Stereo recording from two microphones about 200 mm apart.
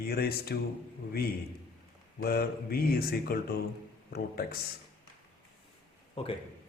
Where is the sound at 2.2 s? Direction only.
50° left (ahead or behind).